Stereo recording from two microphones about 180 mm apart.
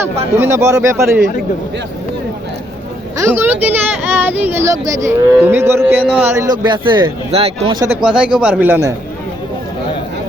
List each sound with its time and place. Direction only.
0.3 s speech: 15° right (ahead or behind)
3.2 s speech: 15° right (ahead or behind); by 7.8 s 35° right (ahead or behind)
8.0 s speech: 5° right (ahead or behind)